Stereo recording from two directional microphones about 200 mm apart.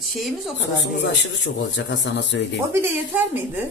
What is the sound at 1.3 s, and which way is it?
Speech, 65° left (ahead or behind).